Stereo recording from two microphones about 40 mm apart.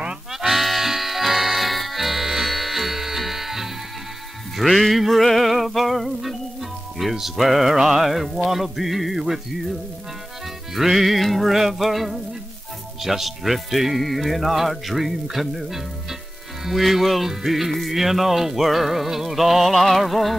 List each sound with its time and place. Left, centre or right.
0.3 s music: centre
7.0 s speech: centre